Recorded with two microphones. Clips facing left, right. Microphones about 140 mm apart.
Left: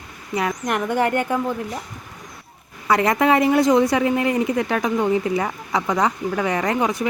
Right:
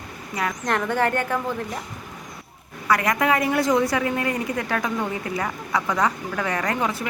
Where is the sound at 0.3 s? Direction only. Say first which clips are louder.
Left 2 dB; 15° left (ahead or behind).